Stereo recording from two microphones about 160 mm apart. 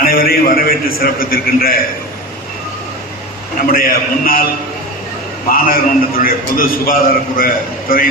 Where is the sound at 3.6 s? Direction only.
65° left (ahead or behind).